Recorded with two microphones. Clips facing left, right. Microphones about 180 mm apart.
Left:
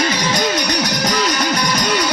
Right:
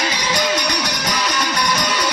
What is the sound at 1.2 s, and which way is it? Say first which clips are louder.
Music: left 3 dB; 40° left (ahead or behind).